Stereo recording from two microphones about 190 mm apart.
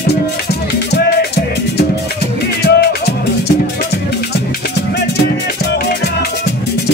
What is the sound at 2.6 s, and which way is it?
Music, 60° left (ahead or behind).